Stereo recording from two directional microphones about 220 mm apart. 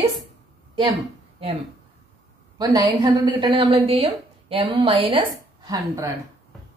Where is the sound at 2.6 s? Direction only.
15° right (ahead or behind).